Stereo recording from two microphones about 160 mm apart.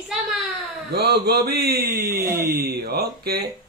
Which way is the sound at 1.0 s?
90° right.